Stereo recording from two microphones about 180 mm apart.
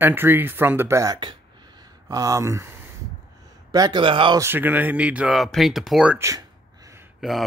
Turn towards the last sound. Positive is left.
turn(degrees=0)  # may be behind; listen again after turning